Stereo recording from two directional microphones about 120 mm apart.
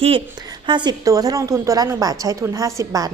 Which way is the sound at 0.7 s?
40° right (ahead or behind).